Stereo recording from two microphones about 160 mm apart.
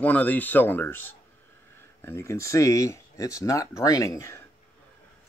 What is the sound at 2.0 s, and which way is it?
Speech, 15° left (ahead or behind).